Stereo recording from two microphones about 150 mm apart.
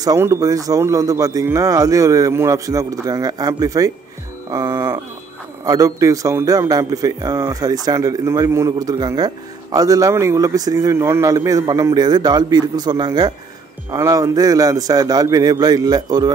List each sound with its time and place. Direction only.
0.0 s a man's voice: 25° right (ahead or behind)